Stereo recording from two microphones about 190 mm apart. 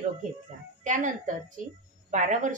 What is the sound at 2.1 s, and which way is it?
Speech, 40° right (ahead or behind).